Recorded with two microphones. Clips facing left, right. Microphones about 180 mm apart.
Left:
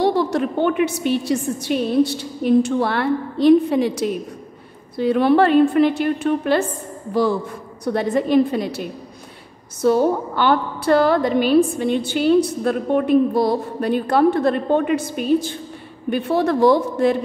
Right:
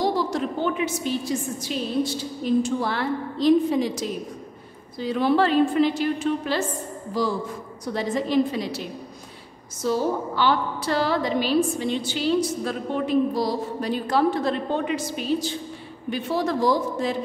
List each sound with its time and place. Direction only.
0.0 s a woman's voice: 65° left (ahead or behind)